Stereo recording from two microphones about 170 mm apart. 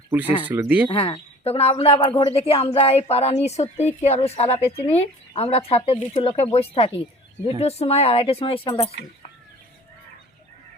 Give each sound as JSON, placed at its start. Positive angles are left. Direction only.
{"t": 0.1, "sound": "speech", "side_deg": -10}
{"t": 0.9, "sound": "a woman's voice", "side_deg": 30}